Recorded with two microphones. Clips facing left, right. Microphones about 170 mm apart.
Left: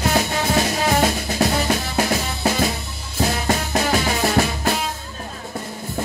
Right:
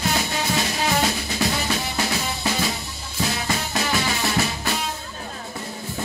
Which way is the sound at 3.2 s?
50° left (ahead or behind).